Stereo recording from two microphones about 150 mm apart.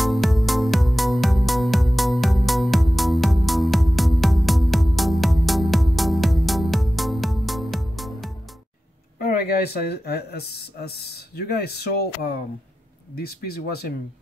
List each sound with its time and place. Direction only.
0.0 s music: centre (ahead or behind)
9.2 s speech: 90° left